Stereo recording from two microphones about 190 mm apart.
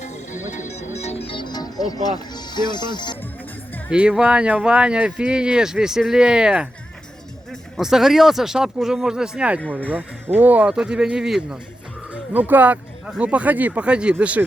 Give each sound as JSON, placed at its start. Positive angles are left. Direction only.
{"t": 0.0, "sound": "music", "side_deg": 40}
{"t": 1.3, "sound": "speech", "side_deg": 25}
{"t": 3.8, "sound": "speech", "side_deg": -5}
{"t": 7.8, "sound": "speech", "side_deg": 0}